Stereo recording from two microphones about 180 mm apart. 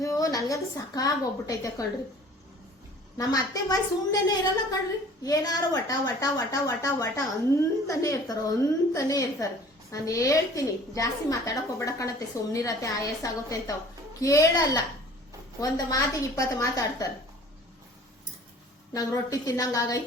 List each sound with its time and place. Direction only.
0.0 s a woman's voice: 20° left (ahead or behind)
3.2 s a woman's voice: 20° left (ahead or behind)
18.9 s a woman's voice: 20° left (ahead or behind)